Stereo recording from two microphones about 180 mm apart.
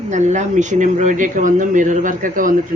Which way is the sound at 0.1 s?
40° right (ahead or behind).